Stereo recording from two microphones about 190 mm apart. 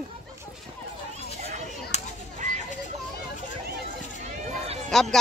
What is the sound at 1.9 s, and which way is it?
Children playing, 35° left (ahead or behind).